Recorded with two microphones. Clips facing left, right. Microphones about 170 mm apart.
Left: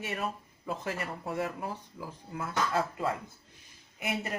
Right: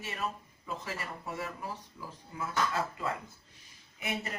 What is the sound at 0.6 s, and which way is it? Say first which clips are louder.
Speech: left 4 dB; 55° left (ahead or behind).